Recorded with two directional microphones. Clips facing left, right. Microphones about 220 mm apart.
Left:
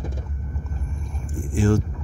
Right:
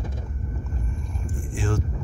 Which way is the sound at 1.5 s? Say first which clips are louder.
Left 8 dB; 40° left (ahead or behind).